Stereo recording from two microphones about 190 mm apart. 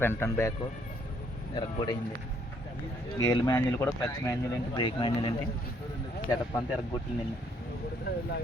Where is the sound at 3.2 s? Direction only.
20° left (ahead or behind).